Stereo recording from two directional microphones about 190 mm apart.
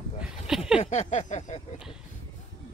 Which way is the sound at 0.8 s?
35° left (ahead or behind).